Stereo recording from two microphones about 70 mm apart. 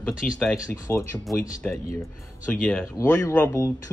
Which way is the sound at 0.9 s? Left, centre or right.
Left.